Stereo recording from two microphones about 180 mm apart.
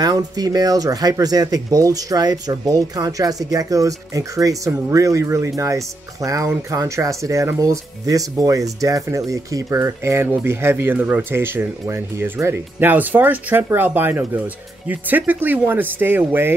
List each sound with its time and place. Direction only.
0.0 s speech: 20° right (ahead or behind)